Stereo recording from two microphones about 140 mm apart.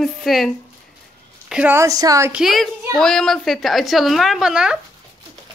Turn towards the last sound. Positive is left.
turn(degrees=-5)  # may be behind; listen again after turning